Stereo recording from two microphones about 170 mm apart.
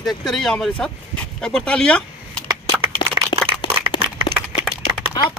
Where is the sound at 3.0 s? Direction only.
25° left (ahead or behind).